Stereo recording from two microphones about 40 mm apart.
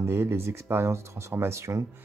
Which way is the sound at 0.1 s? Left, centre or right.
Right.